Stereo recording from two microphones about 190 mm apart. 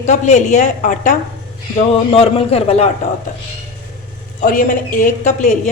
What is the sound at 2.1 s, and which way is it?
Speech, 30° left (ahead or behind).